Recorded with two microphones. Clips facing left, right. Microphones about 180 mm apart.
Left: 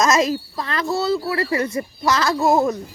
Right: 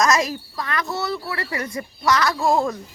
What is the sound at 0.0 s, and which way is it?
A woman's voice, 25° left (ahead or behind).